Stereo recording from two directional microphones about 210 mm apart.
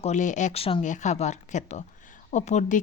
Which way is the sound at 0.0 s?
35° left (ahead or behind).